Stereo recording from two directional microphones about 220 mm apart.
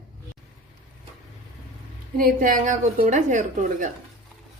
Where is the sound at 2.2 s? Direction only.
40° right (ahead or behind).